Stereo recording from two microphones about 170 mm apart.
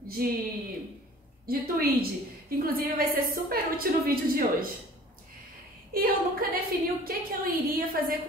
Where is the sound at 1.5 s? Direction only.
60° right (ahead or behind).